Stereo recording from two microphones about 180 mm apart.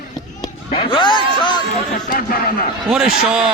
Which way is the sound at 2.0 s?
55° left (ahead or behind).